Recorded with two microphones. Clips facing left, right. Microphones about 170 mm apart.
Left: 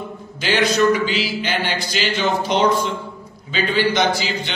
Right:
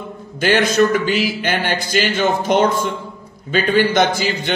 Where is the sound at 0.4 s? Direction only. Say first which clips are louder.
Right 3 dB; 50° right (ahead or behind).